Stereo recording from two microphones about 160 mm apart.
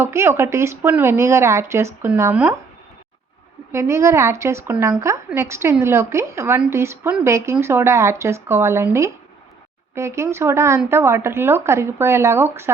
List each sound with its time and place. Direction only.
0.0 s speech: 15° right (ahead or behind)
3.7 s speech: 15° right (ahead or behind)